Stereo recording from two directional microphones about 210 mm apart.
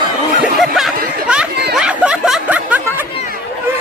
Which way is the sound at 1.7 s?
5° right (ahead or behind).